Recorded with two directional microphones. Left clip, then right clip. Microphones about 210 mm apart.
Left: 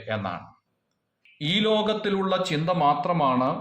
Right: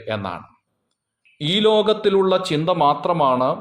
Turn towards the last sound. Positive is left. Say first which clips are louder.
# right 5 dB
turn(degrees=-35)  # may be behind; listen again after turning